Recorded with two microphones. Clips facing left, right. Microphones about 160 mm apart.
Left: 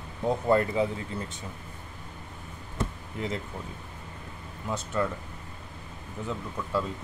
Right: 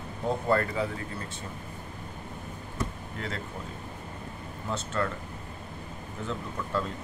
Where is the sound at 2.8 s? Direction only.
20° left (ahead or behind).